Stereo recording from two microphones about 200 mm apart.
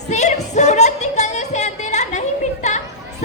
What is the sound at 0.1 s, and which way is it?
Music, 35° left (ahead or behind).